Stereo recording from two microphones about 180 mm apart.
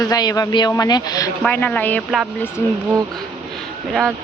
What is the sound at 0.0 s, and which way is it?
Speech, 20° left (ahead or behind).